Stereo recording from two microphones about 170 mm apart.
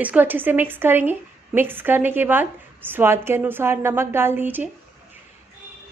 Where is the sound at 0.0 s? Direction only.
10° right (ahead or behind).